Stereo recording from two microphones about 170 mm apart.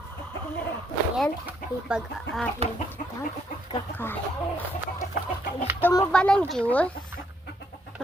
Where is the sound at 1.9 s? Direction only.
Centre (ahead or behind).